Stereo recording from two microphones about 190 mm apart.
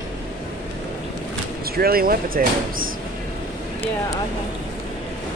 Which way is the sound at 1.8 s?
50° right (ahead or behind).